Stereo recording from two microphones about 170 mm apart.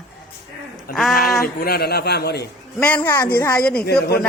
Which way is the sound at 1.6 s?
65° left (ahead or behind).